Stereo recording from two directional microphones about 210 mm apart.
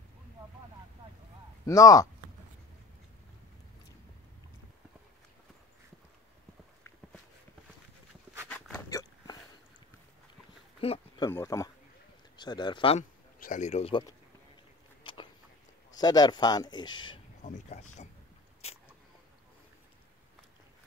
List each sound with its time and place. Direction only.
1.7 s a man's voice: 15° left (ahead or behind)
8.5 s hiccup: 10° left (ahead or behind)
10.8 s a sound: 25° left (ahead or behind)
11.2 s a man's voice: 15° left (ahead or behind)
13.4 s speech: 35° left (ahead or behind)
15.9 s speech: 20° left (ahead or behind)
17.4 s speech: 35° left (ahead or behind)
18.6 s a sound: 30° left (ahead or behind)